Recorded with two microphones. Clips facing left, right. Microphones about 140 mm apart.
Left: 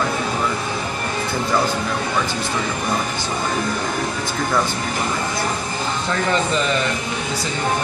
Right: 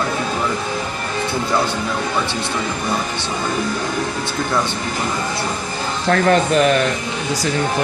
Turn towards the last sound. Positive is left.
turn(degrees=-65)  # may be behind; listen again after turning